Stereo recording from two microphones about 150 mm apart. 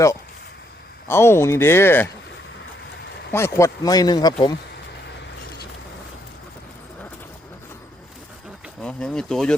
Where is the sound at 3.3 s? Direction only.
20° left (ahead or behind).